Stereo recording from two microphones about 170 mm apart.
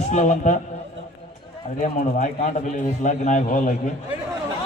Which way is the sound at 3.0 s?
45° left (ahead or behind).